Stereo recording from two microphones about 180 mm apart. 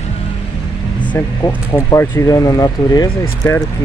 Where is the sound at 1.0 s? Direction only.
10° left (ahead or behind).